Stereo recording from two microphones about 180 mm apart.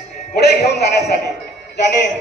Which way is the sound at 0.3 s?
60° left (ahead or behind).